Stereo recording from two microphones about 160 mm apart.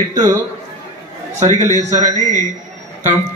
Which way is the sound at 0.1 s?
20° right (ahead or behind).